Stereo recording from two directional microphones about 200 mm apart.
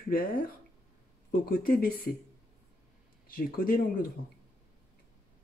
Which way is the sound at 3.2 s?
45° left (ahead or behind).